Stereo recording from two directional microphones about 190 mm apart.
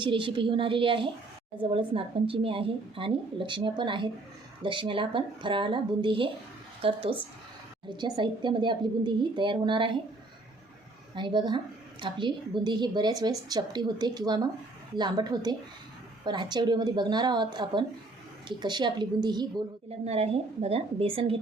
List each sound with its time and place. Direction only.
0.0 s a woman's voice: 25° right (ahead or behind)
11.1 s a woman's voice: 25° right (ahead or behind)
20.1 s a woman's voice: 35° right (ahead or behind)